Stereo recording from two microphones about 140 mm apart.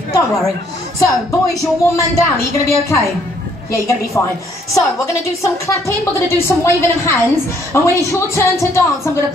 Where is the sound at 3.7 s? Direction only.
20° left (ahead or behind).